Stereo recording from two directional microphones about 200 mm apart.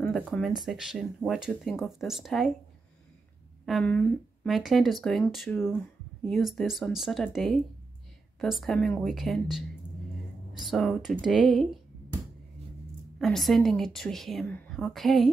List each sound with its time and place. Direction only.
0.0 s speech: 5° left (ahead or behind)
3.6 s speech: 5° left (ahead or behind)
13.2 s speech: centre (ahead or behind)